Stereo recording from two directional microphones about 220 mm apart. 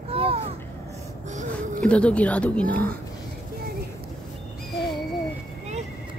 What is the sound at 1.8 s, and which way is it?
Speech, 5° left (ahead or behind).